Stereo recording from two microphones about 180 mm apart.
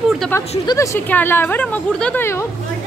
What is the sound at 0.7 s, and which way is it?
Speech, 15° left (ahead or behind).